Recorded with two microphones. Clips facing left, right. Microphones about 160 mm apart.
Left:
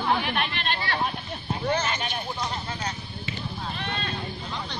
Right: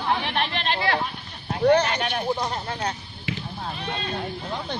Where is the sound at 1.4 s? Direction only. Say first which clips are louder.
Right 8 dB; 65° right (ahead or behind).